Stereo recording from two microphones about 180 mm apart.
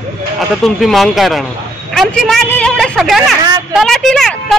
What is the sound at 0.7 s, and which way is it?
Speech, centre (ahead or behind).